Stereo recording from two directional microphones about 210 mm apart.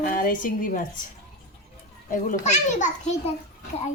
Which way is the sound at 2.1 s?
35° left (ahead or behind).